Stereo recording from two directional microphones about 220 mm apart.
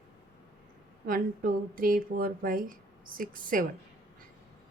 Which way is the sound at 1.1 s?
40° right (ahead or behind).